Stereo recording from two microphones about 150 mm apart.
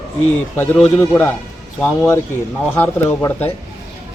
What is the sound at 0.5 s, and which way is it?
Speech, 15° left (ahead or behind).